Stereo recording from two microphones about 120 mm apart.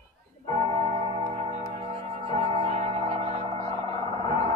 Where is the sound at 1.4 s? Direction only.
60° right (ahead or behind).